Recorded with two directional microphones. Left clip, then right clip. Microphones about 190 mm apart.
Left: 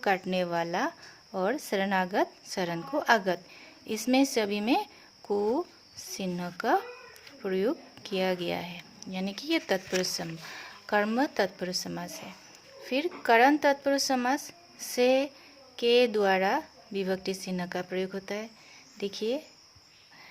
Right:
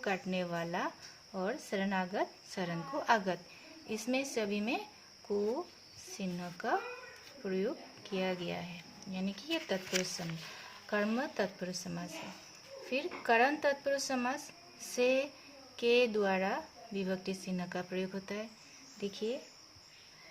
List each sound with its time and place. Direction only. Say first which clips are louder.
0.0 s speech: left 8 dB; 30° left (ahead or behind)
6.1 s speech: left 7 dB; 30° left (ahead or behind)